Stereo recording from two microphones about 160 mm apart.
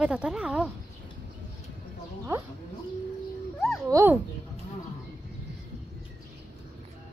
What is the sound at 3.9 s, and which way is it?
Speech, 20° right (ahead or behind).